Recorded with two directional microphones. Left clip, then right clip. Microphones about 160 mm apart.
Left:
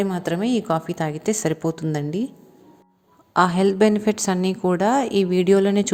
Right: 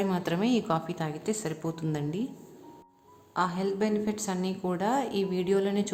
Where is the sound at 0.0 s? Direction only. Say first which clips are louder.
Left 5 dB; 30° left (ahead or behind).